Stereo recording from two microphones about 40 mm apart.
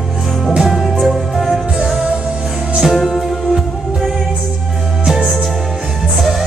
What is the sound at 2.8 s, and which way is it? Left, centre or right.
Music, centre.